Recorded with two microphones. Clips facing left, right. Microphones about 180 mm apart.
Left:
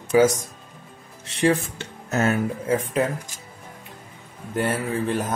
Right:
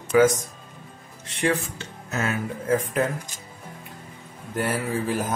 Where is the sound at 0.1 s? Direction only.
30° left (ahead or behind).